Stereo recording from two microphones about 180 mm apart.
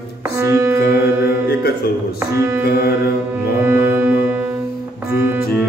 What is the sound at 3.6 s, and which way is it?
Music, 10° right (ahead or behind).